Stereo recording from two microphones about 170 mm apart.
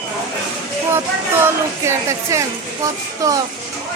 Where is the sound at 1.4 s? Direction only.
15° right (ahead or behind).